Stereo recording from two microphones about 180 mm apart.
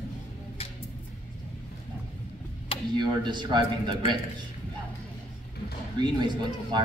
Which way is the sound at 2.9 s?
25° right (ahead or behind).